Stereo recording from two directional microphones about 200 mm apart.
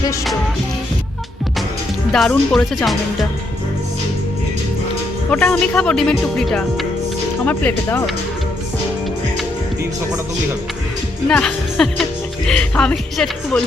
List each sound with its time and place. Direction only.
2.1 s speech: centre (ahead or behind)
5.3 s speech: 5° left (ahead or behind)
11.3 s speech: 5° left (ahead or behind)